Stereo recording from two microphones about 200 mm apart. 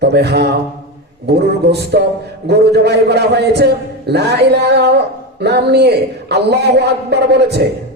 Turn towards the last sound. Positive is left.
turn(degrees=-55)  # may be behind; listen again after turning